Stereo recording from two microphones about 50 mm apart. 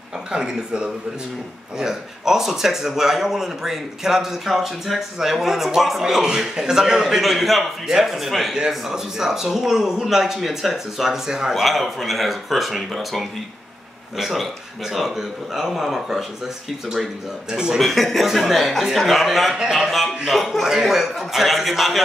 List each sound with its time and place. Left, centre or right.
0.3 s speech: centre
8.5 s speech: centre
17.7 s speech: centre